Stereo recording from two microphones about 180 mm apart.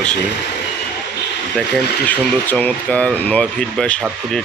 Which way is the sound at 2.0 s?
10° left (ahead or behind).